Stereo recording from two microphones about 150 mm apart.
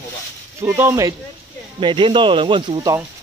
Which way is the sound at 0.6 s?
15° right (ahead or behind).